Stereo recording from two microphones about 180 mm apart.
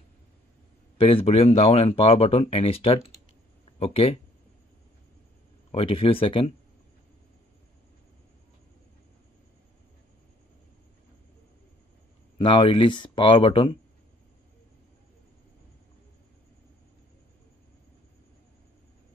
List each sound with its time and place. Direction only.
0.9 s speech: 30° left (ahead or behind)
5.7 s speech: 30° left (ahead or behind)
12.4 s speech: 30° left (ahead or behind)